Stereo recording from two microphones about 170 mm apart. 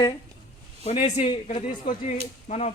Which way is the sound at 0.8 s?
35° left (ahead or behind).